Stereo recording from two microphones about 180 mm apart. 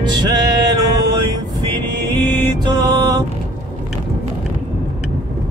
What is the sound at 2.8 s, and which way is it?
Music, 20° right (ahead or behind).